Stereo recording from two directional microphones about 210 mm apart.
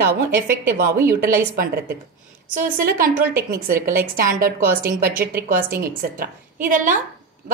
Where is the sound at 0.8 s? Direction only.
10° right (ahead or behind).